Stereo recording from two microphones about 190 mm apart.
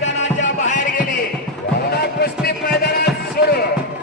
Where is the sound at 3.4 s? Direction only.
55° left (ahead or behind).